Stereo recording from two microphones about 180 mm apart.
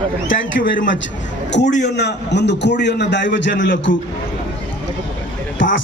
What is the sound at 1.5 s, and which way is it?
A man's voice, 75° left (ahead or behind).